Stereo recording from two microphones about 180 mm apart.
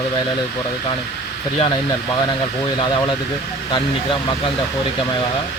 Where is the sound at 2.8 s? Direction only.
25° left (ahead or behind).